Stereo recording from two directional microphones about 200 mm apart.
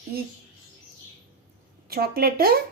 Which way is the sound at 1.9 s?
50° right (ahead or behind).